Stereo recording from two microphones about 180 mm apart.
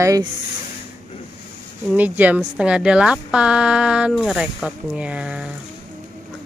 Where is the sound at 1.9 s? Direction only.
10° right (ahead or behind).